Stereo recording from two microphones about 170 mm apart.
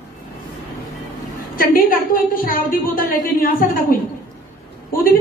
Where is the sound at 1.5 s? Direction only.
55° left (ahead or behind).